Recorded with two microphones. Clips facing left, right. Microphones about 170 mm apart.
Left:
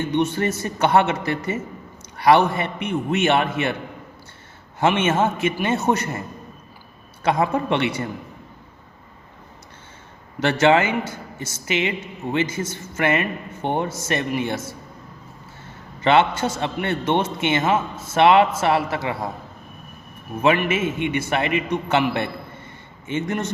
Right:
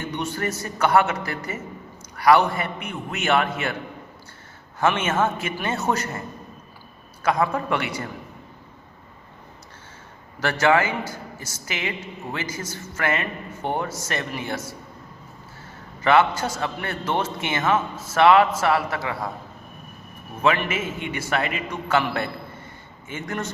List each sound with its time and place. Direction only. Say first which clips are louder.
0.1 s a woman's voice: left 6 dB; 20° left (ahead or behind)
4.8 s a woman's voice: left 3 dB; 20° left (ahead or behind)
10.4 s a woman's voice: left 3 dB; 25° left (ahead or behind)
16.0 s a woman's voice: left 1 dB; 25° left (ahead or behind)
20.4 s a woman's voice: left 3 dB; 20° left (ahead or behind)